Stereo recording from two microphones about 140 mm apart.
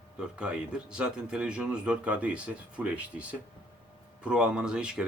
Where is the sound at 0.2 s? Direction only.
5° right (ahead or behind).